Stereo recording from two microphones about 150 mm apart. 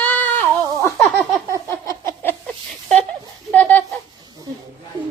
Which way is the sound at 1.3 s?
20° right (ahead or behind).